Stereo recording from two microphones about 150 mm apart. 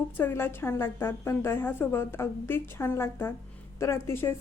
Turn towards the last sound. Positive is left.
turn(degrees=15)  # may be behind; listen again after turning